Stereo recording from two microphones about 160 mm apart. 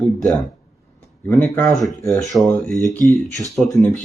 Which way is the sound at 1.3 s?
10° left (ahead or behind).